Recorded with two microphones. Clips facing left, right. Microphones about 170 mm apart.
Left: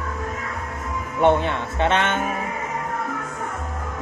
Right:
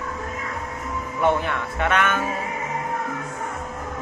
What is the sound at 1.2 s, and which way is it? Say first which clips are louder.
Speech: left 3 dB; 25° left (ahead or behind).